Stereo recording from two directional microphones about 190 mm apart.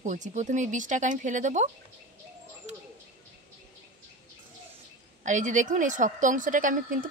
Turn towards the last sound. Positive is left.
turn(degrees=-45)  # may be behind; listen again after turning